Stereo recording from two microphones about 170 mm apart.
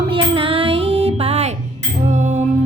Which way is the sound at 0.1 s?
30° right (ahead or behind).